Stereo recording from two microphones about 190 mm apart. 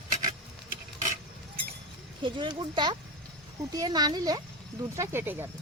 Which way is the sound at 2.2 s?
25° right (ahead or behind).